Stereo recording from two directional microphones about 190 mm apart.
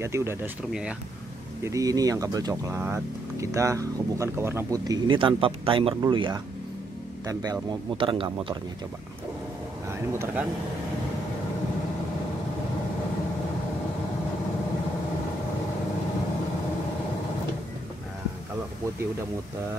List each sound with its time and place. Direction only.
0.0 s speech: 15° right (ahead or behind)
1.6 s speech: 15° right (ahead or behind)
9.8 s speech: 15° right (ahead or behind)